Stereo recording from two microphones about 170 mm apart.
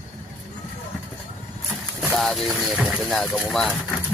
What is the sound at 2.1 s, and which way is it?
Speech, centre (ahead or behind).